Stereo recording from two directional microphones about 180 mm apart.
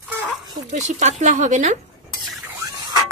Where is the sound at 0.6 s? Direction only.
40° right (ahead or behind).